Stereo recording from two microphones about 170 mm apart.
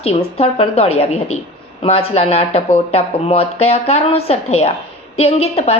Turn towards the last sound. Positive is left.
turn(degrees=35)  # may be behind; listen again after turning